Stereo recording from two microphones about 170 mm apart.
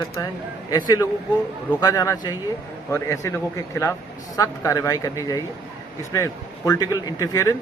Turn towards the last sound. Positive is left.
turn(degrees=20)  # may be behind; listen again after turning